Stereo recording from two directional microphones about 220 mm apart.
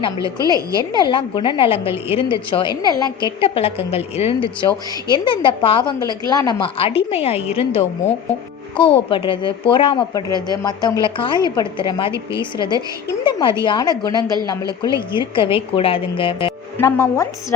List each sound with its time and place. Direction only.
0.5 s a woman's voice: 15° right (ahead or behind)
0.9 s a woman's voice: 20° left (ahead or behind)
16.7 s speech: 10° left (ahead or behind)